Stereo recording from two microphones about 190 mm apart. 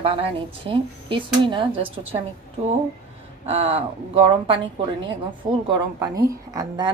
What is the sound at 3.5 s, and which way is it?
Speech, 30° right (ahead or behind).